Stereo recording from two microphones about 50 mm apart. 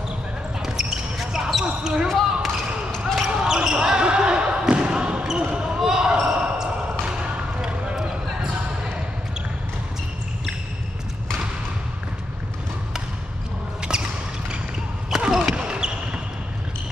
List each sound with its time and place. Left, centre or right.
0.6 s basketball bounce: centre
2.0 s basketball bounce: centre
3.4 s basketball bounce: centre
13.9 s basketball bounce: centre